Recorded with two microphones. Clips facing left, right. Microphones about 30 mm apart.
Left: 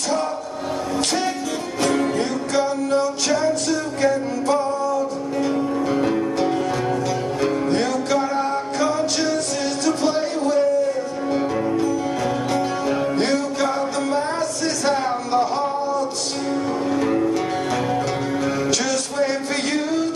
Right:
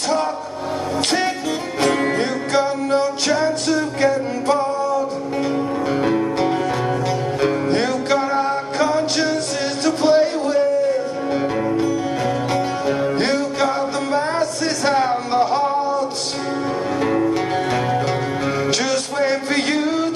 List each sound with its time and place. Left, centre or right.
1.8 s music: right
6.0 s music: right
9.8 s a sound: right
12.5 s music: right
17.0 s music: right
19.5 s music: right